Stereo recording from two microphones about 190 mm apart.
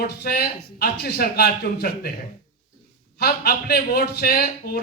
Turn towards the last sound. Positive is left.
turn(degrees=55)  # may be behind; listen again after turning